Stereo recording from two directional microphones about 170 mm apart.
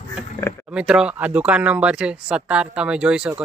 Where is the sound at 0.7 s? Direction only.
5° right (ahead or behind).